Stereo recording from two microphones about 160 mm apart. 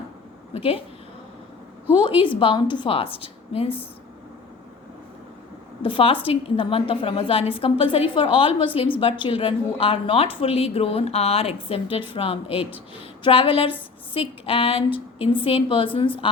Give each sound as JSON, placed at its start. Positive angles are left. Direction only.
{"t": 0.5, "sound": "a woman's voice", "side_deg": 40}
{"t": 2.0, "sound": "a woman's voice", "side_deg": 35}
{"t": 5.8, "sound": "a woman's voice", "side_deg": 35}